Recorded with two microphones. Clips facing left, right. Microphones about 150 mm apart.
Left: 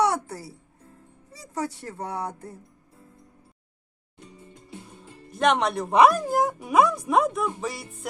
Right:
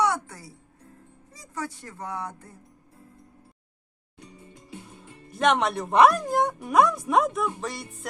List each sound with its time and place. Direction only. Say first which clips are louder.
0.0 s music: left 2 dB; 30° left (ahead or behind)
1.3 s speech: left 4 dB; 30° left (ahead or behind)
5.4 s speech: left 1 dB; centre (ahead or behind)